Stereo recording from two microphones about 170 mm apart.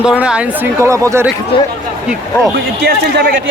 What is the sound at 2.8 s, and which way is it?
Speech, 70° right (ahead or behind).